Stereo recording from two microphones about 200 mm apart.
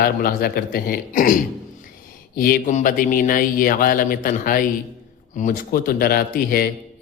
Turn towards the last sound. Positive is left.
turn(degrees=50)  # may be behind; listen again after turning